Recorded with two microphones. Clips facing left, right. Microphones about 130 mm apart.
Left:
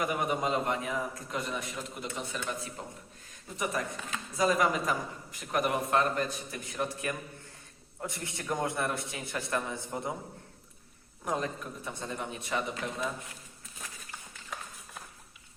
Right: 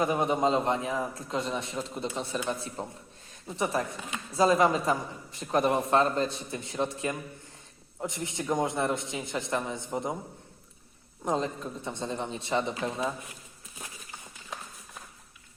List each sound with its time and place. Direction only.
0.0 s a man's voice: 25° right (ahead or behind)
11.3 s a man's voice: 25° right (ahead or behind)